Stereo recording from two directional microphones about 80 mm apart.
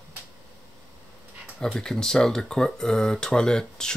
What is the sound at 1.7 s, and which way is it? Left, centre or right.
Speech, centre.